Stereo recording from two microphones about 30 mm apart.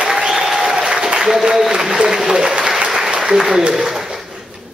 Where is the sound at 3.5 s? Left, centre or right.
Right.